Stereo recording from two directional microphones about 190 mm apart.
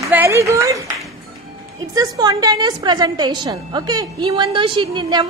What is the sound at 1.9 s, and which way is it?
A woman's voice, 20° right (ahead or behind).